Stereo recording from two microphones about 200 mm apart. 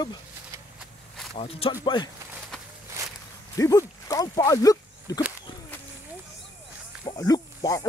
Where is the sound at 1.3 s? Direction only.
30° left (ahead or behind).